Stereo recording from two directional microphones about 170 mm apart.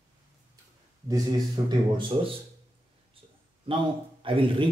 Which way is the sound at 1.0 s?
20° right (ahead or behind).